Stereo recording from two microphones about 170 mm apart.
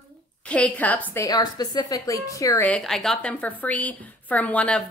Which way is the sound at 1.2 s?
25° left (ahead or behind).